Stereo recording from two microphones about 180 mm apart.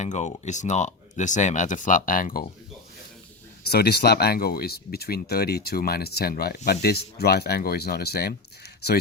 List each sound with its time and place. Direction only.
0.0 s speech: 40° left (ahead or behind)
3.7 s speech: 65° left (ahead or behind)